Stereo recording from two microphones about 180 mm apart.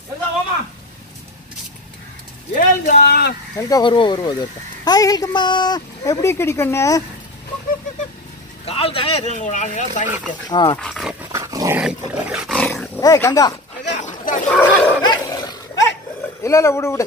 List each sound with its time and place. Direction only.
2.5 s a sound: 45° left (ahead or behind)
3.1 s a sound: 65° left (ahead or behind)
3.5 s speech: 20° left (ahead or behind)
8.6 s speech: 30° left (ahead or behind)
10.0 s speech: 10° right (ahead or behind)
10.5 s speech: 25° left (ahead or behind)
10.8 s speech: centre (ahead or behind)
11.3 s dog: 20° right (ahead or behind)
11.8 s roaring cats: 5° right (ahead or behind)
13.0 s speech: 20° left (ahead or behind)
13.9 s chatter: 45° left (ahead or behind)
14.5 s a sound: 10° left (ahead or behind)
15.0 s dog: 20° left (ahead or behind)
16.4 s speech: 15° left (ahead or behind)